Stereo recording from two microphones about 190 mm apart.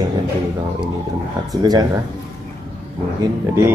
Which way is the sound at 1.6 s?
20° right (ahead or behind).